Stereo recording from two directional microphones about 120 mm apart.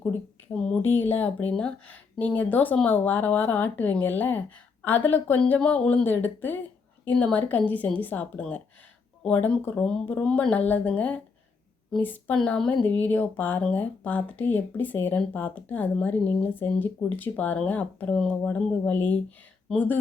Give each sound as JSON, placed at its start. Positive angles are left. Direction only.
{"t": 0.8, "sound": "speech", "side_deg": 15}